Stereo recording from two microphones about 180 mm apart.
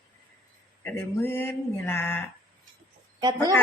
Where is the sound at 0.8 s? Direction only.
10° left (ahead or behind).